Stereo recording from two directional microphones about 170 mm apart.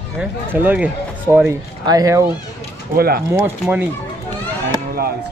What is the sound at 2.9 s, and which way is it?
Speech, 65° right (ahead or behind).